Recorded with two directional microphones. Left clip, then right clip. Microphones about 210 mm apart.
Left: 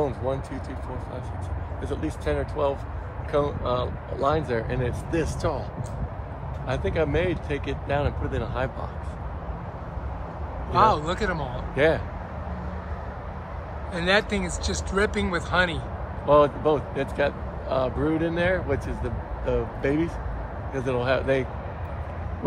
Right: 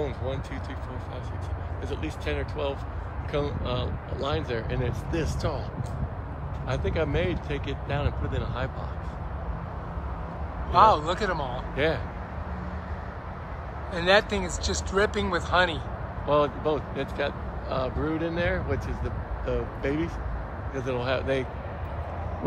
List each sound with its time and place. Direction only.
2.0 s speech: 30° left (ahead or behind)
6.7 s speech: 45° left (ahead or behind)
10.7 s speech: 10° right (ahead or behind)
11.7 s speech: 40° left (ahead or behind)
13.9 s speech: 10° right (ahead or behind)
16.3 s speech: 40° left (ahead or behind)